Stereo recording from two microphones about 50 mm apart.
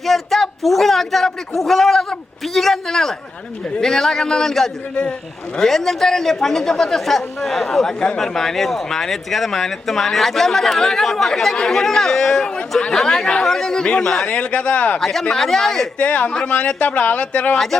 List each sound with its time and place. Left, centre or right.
0.0 s a man's voice: centre; by 14.9 s left
15.0 s a man's voice: centre
16.0 s speech: left